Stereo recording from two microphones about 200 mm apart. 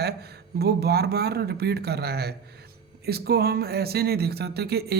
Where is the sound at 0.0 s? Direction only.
55° right (ahead or behind).